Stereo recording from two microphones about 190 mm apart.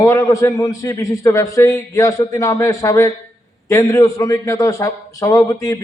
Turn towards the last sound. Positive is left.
turn(degrees=20)  # may be behind; listen again after turning